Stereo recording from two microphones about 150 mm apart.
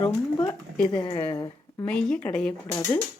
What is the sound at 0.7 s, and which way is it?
Speech, 5° left (ahead or behind).